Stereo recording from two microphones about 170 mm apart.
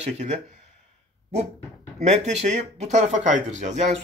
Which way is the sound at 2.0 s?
45° right (ahead or behind).